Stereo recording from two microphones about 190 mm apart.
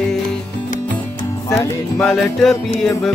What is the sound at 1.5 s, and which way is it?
Music, 10° left (ahead or behind).